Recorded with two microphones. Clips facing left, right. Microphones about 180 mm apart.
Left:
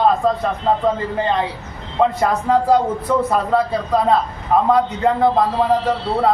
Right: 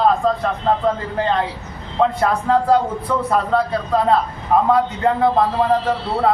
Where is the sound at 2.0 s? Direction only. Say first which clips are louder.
Left 1 dB; 5° left (ahead or behind).